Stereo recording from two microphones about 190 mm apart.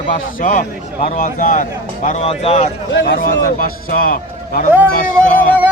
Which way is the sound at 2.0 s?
35° left (ahead or behind).